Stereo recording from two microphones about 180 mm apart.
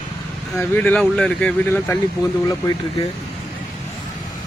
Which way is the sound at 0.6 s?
10° left (ahead or behind).